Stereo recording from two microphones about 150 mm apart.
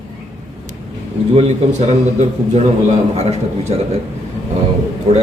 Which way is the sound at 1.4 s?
50° right (ahead or behind).